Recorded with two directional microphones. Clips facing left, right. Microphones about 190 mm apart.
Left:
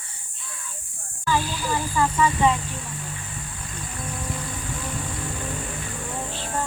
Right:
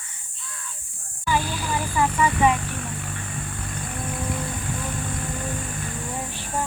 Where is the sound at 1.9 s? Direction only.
15° right (ahead or behind).